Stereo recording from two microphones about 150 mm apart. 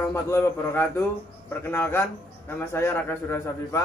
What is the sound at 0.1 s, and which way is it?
A man's voice, 15° left (ahead or behind).